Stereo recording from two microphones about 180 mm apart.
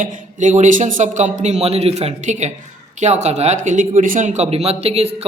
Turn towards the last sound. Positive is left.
turn(degrees=-35)  # may be behind; listen again after turning